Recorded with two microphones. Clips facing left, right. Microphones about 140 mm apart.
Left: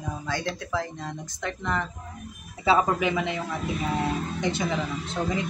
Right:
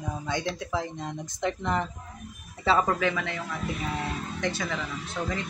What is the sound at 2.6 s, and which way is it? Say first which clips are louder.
Speech: left 2 dB; 10° left (ahead or behind).